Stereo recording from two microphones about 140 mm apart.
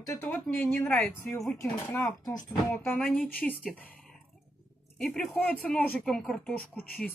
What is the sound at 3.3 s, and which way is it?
Speech, 10° left (ahead or behind).